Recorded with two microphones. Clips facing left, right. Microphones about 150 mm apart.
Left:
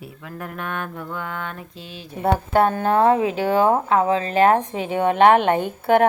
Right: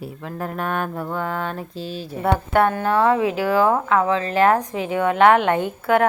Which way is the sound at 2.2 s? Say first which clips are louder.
Even; 25° left (ahead or behind).